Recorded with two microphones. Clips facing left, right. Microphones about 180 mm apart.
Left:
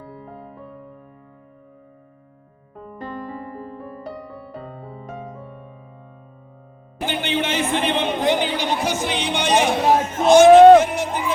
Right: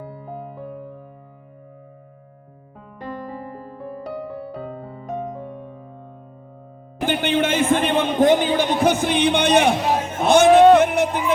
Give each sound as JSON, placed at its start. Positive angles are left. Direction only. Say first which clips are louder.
{"t": 0.5, "sound": "music", "louder": "right 5 dB", "side_deg": 0}
{"t": 2.7, "sound": "music", "louder": "left 1 dB", "side_deg": 0}
{"t": 7.0, "sound": "a sound", "louder": "right 4 dB", "side_deg": -50}
{"t": 10.8, "sound": "music", "louder": "right 1 dB", "side_deg": -60}